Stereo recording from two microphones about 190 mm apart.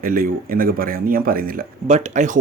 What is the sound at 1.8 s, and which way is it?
Speech, 35° right (ahead or behind).